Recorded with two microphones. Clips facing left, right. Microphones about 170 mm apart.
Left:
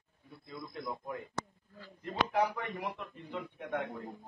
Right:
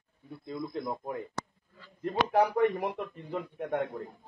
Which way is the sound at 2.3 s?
45° right (ahead or behind).